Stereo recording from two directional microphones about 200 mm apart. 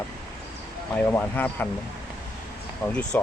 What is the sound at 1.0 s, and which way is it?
Speech, 10° left (ahead or behind).